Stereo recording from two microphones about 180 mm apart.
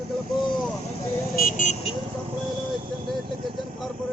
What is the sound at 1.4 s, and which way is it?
Vehicle, 50° left (ahead or behind).